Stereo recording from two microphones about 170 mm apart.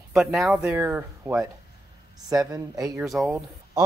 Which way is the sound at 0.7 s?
10° right (ahead or behind).